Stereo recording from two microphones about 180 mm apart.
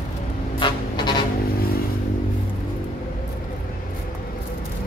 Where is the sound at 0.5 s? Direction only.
25° left (ahead or behind).